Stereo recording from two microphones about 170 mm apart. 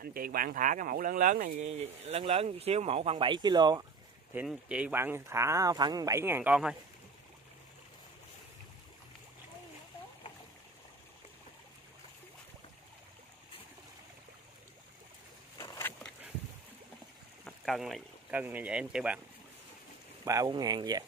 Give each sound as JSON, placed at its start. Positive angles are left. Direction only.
{"t": 0.0, "sound": "speech", "side_deg": -60}
{"t": 4.5, "sound": "speech", "side_deg": -5}
{"t": 15.5, "sound": "a sound", "side_deg": 15}
{"t": 17.5, "sound": "speech", "side_deg": 0}
{"t": 20.2, "sound": "speech", "side_deg": -20}